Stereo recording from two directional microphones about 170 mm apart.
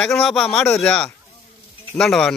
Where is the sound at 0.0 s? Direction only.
5° left (ahead or behind).